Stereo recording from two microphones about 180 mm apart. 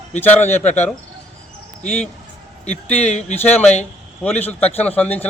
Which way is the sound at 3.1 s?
35° left (ahead or behind).